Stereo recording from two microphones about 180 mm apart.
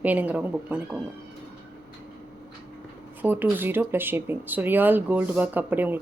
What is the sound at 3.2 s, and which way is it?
Speech, 10° right (ahead or behind).